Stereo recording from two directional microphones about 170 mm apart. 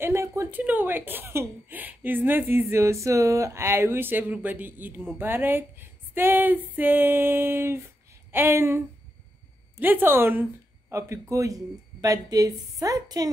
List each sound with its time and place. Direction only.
0.0 s speech: 15° right (ahead or behind)